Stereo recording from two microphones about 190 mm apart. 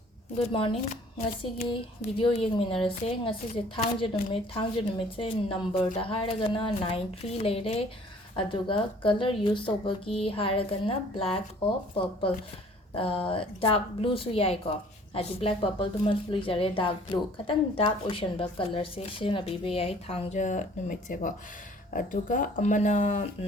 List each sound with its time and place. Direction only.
0.3 s a woman's voice: 30° left (ahead or behind)
13.0 s a woman's voice: 30° left (ahead or behind)